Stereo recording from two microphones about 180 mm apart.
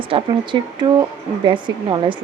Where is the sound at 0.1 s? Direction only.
25° right (ahead or behind).